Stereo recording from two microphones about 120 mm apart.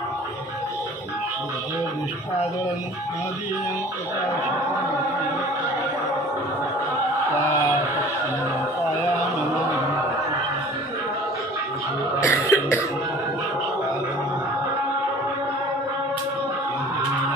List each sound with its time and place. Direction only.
12.2 s cough: 20° left (ahead or behind)